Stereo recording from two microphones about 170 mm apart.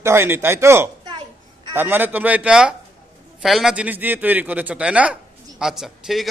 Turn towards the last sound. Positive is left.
turn(degrees=0)  # may be behind; listen again after turning